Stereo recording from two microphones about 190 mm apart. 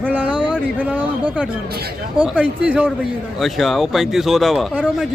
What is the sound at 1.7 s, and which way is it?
Speech, 55° right (ahead or behind).